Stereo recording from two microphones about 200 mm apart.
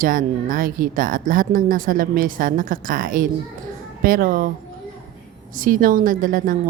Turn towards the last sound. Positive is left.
turn(degrees=-45)  # may be behind; listen again after turning